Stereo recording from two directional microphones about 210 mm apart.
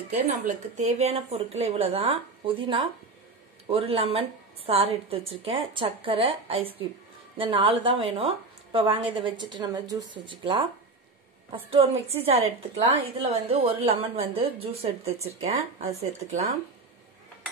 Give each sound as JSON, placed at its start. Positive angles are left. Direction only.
{"t": 0.1, "sound": "a woman's voice", "side_deg": -30}